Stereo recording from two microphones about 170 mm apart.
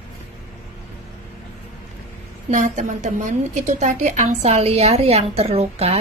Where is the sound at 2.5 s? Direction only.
45° right (ahead or behind).